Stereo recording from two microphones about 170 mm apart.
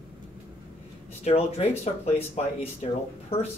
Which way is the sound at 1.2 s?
40° left (ahead or behind).